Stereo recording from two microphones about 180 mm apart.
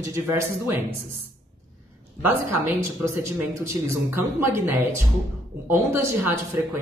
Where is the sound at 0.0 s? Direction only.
15° right (ahead or behind).